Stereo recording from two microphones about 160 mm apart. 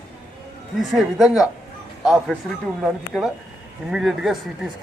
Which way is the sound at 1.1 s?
Centre (ahead or behind).